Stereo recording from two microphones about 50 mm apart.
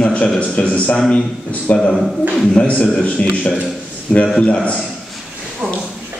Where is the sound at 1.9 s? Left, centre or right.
Centre.